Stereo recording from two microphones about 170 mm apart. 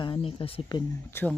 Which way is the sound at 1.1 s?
15° left (ahead or behind).